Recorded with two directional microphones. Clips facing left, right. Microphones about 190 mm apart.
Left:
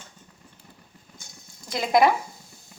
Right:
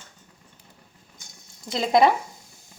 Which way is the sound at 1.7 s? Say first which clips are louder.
Right 1 dB; 25° right (ahead or behind).